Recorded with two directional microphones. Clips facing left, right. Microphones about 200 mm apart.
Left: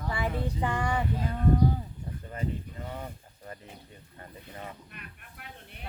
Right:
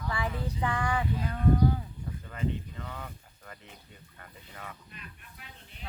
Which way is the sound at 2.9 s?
30° left (ahead or behind).